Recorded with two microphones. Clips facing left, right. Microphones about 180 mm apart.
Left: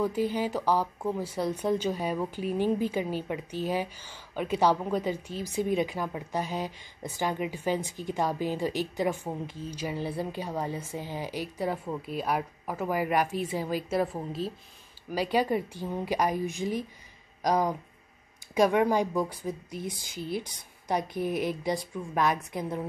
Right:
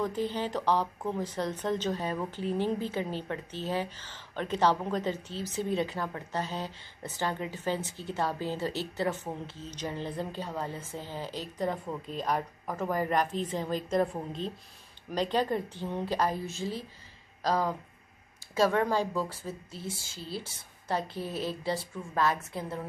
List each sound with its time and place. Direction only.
0.0 s speech: 10° left (ahead or behind)